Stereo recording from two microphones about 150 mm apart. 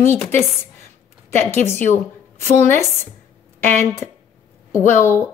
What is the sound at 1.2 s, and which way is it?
Speech, 15° left (ahead or behind).